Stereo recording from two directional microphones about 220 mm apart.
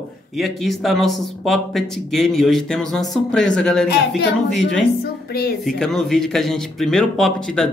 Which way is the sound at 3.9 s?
45° left (ahead or behind).